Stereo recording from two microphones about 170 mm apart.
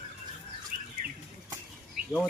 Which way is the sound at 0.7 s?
60° right (ahead or behind).